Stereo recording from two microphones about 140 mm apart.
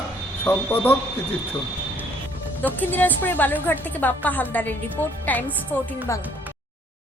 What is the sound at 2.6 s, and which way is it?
A woman's voice, 15° left (ahead or behind).